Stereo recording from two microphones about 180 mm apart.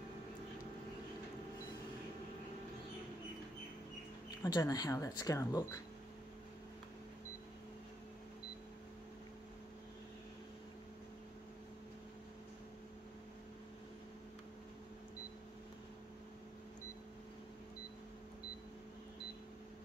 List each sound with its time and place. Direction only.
4.4 s speech: 20° left (ahead or behind)